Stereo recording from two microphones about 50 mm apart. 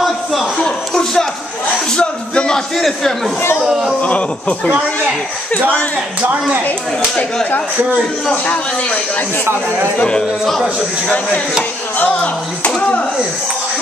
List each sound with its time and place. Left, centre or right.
0.0 s a sound: centre
0.6 s a sound: centre
2.8 s a man's voice: centre
3.6 s speech: centre
4.0 s speech: left
10.4 s a man's voice: centre
12.0 s speech: left